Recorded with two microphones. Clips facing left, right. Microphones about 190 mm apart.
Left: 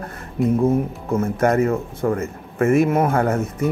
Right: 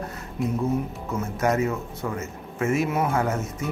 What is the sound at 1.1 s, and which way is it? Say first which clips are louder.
Speech: left 6 dB; 55° left (ahead or behind).